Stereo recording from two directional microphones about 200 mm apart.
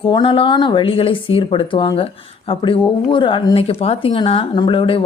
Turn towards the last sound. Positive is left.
turn(degrees=25)  # may be behind; listen again after turning